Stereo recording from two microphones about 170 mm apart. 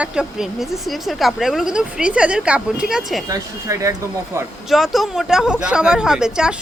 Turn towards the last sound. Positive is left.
turn(degrees=-5)  # may be behind; listen again after turning